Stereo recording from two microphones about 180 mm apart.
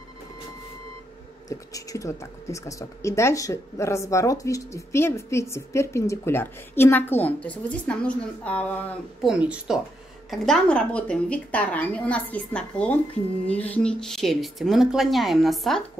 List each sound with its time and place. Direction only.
1.5 s speech: 20° left (ahead or behind)
9.3 s speech: 5° right (ahead or behind)